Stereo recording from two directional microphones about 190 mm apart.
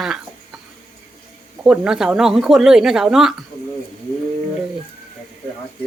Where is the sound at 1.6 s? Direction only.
5° right (ahead or behind).